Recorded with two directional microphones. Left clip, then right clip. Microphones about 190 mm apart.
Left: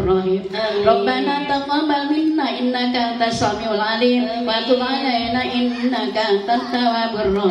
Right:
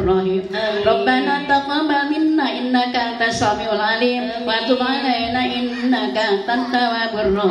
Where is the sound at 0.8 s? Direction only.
45° right (ahead or behind).